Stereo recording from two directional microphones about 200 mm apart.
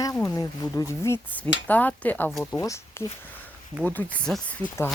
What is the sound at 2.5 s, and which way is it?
Speech, 15° left (ahead or behind).